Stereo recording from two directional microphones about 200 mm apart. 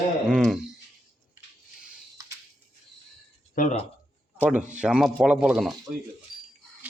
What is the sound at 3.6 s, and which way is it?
Speech, 45° left (ahead or behind).